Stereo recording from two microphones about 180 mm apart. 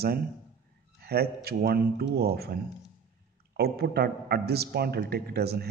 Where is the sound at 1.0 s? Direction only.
60° right (ahead or behind).